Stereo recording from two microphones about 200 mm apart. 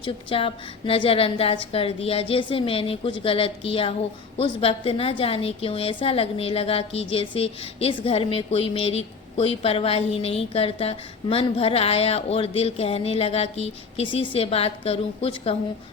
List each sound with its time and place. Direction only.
0.0 s a woman's voice: 25° left (ahead or behind)